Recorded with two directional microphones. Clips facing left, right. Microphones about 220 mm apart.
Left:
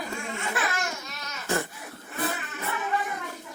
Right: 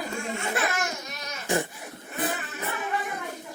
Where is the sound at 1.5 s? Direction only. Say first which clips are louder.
Right 2 dB; 15° right (ahead or behind).